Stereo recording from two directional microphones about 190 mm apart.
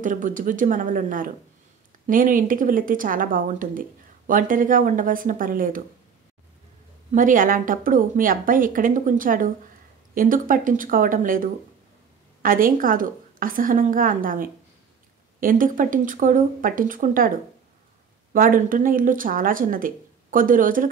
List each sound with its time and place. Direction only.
0.0 s speech: 45° right (ahead or behind)
7.1 s speech: 45° right (ahead or behind)
18.3 s speech: 45° right (ahead or behind)